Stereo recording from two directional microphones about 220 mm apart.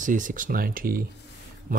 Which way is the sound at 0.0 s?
35° right (ahead or behind).